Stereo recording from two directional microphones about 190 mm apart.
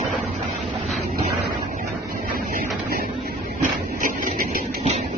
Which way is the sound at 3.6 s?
45° right (ahead or behind).